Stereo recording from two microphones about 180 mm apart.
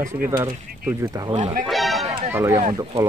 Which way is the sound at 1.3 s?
35° right (ahead or behind).